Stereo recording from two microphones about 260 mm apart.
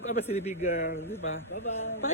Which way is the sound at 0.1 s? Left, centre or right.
Left.